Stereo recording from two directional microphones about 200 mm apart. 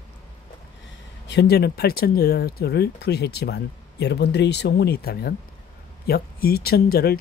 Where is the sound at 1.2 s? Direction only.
55° left (ahead or behind).